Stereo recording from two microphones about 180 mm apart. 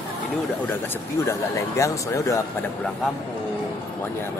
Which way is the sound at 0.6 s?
10° left (ahead or behind).